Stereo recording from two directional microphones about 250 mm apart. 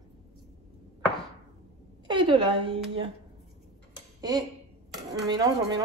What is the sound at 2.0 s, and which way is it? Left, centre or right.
A woman's voice, centre.